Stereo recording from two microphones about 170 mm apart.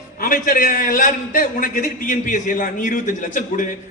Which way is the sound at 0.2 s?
55° left (ahead or behind).